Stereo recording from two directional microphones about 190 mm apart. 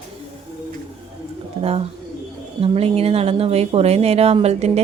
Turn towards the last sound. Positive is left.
turn(degrees=-35)  # may be behind; listen again after turning